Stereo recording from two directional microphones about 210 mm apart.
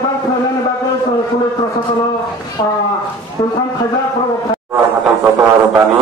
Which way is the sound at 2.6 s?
20° left (ahead or behind).